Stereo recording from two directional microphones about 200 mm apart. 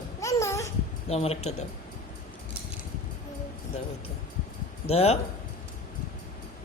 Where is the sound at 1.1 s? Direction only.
30° left (ahead or behind).